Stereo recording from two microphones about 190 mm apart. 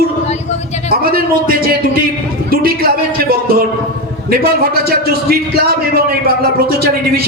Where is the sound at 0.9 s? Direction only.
50° right (ahead or behind).